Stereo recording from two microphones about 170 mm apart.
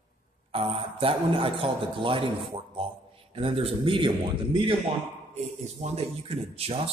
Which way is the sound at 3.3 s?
35° right (ahead or behind).